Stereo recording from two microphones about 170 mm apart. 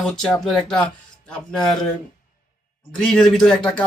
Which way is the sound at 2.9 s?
5° left (ahead or behind).